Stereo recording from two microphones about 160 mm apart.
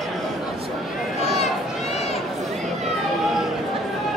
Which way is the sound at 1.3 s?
40° left (ahead or behind).